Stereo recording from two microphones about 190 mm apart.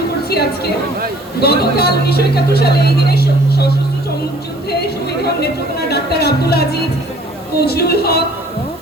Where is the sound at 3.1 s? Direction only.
55° left (ahead or behind).